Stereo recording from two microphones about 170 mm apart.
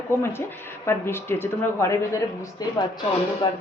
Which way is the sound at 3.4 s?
25° left (ahead or behind).